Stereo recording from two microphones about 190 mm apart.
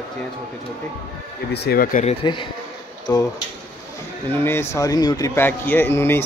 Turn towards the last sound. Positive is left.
turn(degrees=10)  # may be behind; listen again after turning